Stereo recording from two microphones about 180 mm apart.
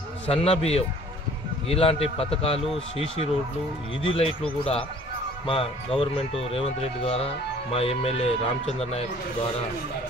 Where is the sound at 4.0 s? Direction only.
30° left (ahead or behind).